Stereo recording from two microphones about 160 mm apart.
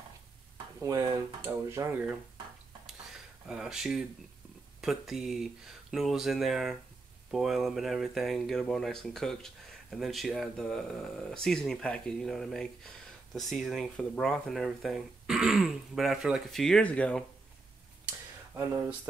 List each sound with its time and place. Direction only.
0.7 s speech: 20° right (ahead or behind)
3.4 s speech: 5° right (ahead or behind)
18.0 s a sound: 10° right (ahead or behind)